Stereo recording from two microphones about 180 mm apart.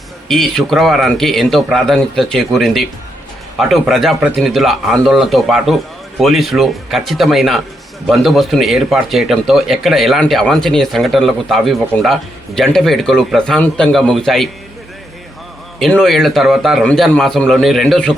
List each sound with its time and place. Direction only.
0.3 s speech: centre (ahead or behind)
15.8 s speech: centre (ahead or behind)